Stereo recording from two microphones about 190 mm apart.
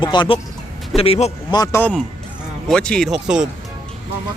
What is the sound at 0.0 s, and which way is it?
A man's voice, 25° left (ahead or behind).